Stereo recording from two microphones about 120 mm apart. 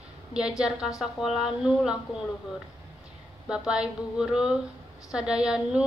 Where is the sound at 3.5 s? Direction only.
5° right (ahead or behind).